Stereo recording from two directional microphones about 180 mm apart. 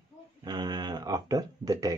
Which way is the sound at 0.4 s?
25° right (ahead or behind).